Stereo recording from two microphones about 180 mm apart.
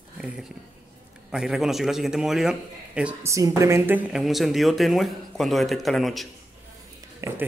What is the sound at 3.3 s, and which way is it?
Speech, 15° right (ahead or behind).